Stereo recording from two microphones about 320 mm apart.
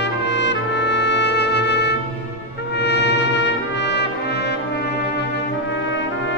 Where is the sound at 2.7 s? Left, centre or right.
Left.